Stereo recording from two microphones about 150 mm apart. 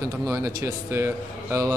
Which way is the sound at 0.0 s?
20° right (ahead or behind).